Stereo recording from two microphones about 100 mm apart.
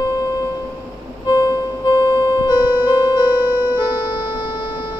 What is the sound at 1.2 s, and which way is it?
Music, 45° left (ahead or behind).